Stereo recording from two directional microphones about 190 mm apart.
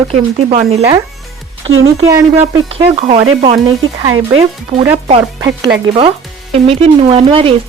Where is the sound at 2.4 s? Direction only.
30° right (ahead or behind).